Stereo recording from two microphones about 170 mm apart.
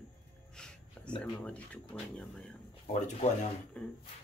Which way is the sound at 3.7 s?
5° left (ahead or behind).